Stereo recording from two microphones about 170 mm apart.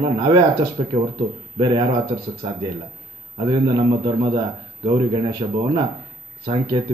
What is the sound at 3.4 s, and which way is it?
A man's voice, 30° right (ahead or behind).